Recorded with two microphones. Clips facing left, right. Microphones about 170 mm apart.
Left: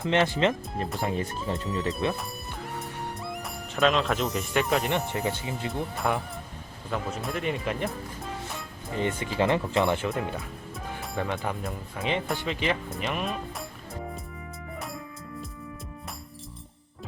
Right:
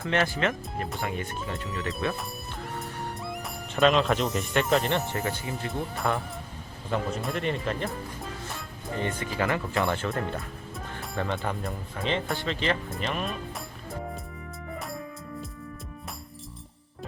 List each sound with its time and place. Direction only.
0.0 s speech: 20° left (ahead or behind)
1.4 s speech: centre (ahead or behind)
2.1 s music: centre (ahead or behind)
4.9 s speech: 15° left (ahead or behind)
5.7 s speech: centre (ahead or behind)
7.5 s speech: 10° left (ahead or behind)
9.0 s speech: 20° left (ahead or behind)
10.1 s speech: centre (ahead or behind)